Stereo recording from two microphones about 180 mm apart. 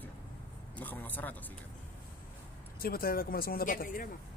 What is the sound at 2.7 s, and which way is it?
Speech, 55° left (ahead or behind).